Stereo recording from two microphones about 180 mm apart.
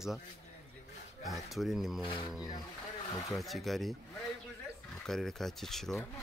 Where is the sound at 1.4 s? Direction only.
Centre (ahead or behind).